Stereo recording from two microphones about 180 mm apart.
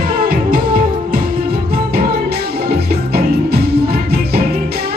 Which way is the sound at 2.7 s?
60° right (ahead or behind).